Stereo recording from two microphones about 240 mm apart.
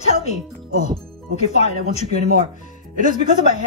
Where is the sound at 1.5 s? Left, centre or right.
Left.